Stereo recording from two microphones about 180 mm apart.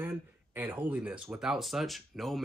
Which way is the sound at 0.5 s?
10° right (ahead or behind).